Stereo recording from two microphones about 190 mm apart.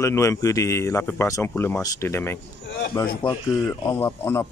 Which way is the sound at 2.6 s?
65° left (ahead or behind).